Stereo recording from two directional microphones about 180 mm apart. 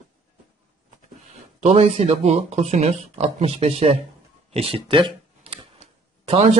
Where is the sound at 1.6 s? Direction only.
35° right (ahead or behind).